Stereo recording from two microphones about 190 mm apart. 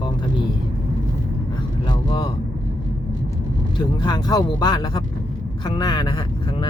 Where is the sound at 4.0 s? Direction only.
20° left (ahead or behind).